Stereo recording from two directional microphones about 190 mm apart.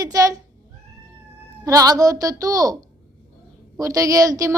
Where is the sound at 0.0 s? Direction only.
20° right (ahead or behind).